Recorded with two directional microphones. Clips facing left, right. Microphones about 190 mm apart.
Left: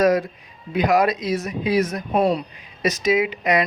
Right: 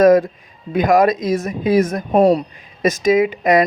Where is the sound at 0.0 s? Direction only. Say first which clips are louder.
Right 7 dB; 50° right (ahead or behind).